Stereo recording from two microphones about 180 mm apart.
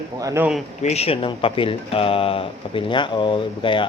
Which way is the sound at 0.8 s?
35° left (ahead or behind).